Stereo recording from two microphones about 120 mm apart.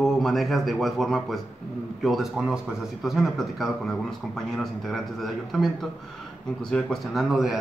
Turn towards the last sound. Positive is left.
turn(degrees=0)  # may be behind; listen again after turning